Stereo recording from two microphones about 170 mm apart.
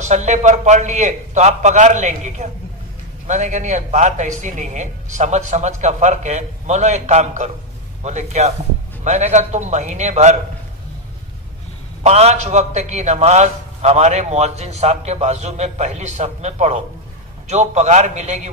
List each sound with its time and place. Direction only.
0.0 s a man's voice: 45° right (ahead or behind)
12.0 s a man's voice: 40° right (ahead or behind)